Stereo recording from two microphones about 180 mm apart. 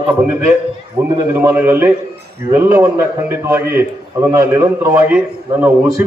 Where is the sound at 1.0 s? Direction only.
15° right (ahead or behind).